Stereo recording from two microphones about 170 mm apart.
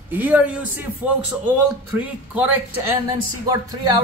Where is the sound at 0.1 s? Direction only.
10° right (ahead or behind).